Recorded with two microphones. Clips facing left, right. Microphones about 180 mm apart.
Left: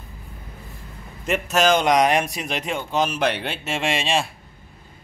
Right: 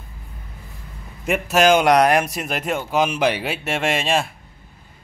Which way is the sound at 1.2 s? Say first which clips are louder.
Right 3 dB; 10° right (ahead or behind).